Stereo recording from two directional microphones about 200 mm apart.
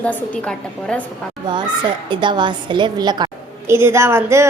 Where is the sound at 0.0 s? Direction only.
5° left (ahead or behind).